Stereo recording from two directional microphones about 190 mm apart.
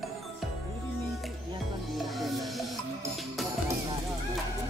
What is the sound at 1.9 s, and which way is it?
Music, centre (ahead or behind).